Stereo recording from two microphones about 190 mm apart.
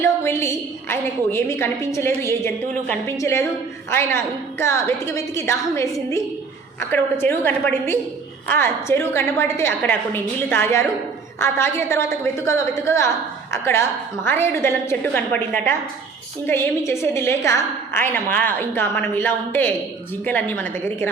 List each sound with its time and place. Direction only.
0.0 s a woman's voice: 15° left (ahead or behind)